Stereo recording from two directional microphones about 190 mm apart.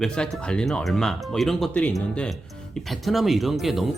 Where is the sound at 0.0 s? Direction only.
5° left (ahead or behind).